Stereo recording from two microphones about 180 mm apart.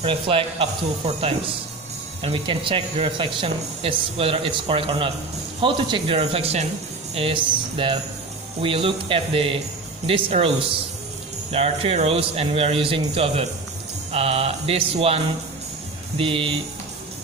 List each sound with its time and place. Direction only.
0.0 s speech: 30° right (ahead or behind)
11.5 s speech: 35° right (ahead or behind)